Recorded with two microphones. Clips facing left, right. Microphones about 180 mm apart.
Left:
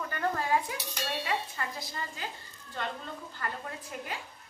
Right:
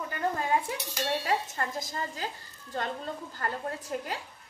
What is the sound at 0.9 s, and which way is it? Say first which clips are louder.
Speech: right 4 dB; 45° right (ahead or behind).